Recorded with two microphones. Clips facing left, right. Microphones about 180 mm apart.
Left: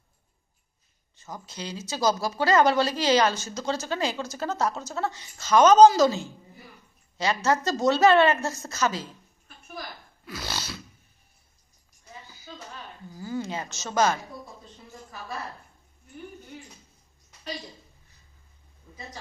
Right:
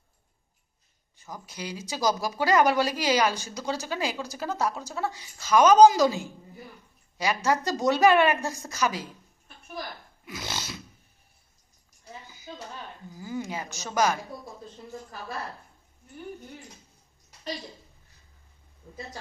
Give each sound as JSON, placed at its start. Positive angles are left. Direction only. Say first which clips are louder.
{"t": 1.1, "sound": "speech", "louder": "left 1 dB", "side_deg": -10}
{"t": 10.2, "sound": "dog", "louder": "left 1 dB", "side_deg": -20}
{"t": 13.1, "sound": "speech", "louder": "left 2 dB", "side_deg": -15}